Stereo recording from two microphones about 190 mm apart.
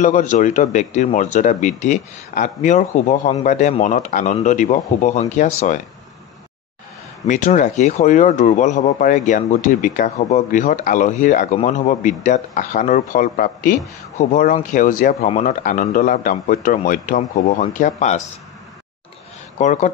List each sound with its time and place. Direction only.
0.0 s speech: 40° left (ahead or behind)
7.2 s speech: 40° left (ahead or behind)
19.6 s speech: 40° left (ahead or behind)